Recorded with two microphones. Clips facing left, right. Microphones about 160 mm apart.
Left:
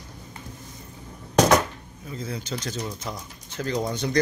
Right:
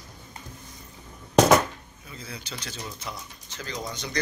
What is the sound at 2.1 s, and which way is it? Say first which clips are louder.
Speech: left 8 dB; 45° left (ahead or behind).